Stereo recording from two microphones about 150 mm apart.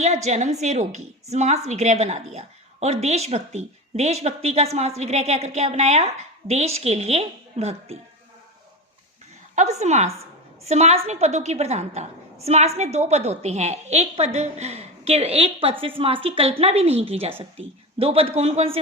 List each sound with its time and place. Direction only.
0.3 s a woman's voice: 50° right (ahead or behind)
9.6 s a woman's voice: 50° right (ahead or behind)